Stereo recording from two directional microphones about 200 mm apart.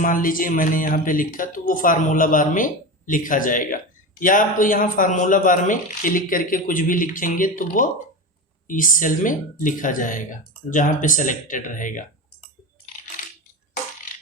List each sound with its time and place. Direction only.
0.0 s a man's voice: 45° left (ahead or behind)